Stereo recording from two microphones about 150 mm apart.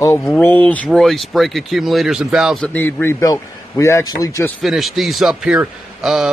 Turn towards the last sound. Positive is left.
turn(degrees=0)  # may be behind; listen again after turning